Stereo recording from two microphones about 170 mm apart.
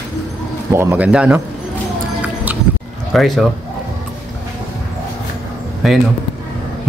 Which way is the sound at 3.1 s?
Centre (ahead or behind).